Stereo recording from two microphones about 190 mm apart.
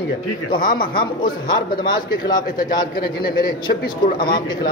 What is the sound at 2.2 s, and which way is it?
Speech, 20° left (ahead or behind).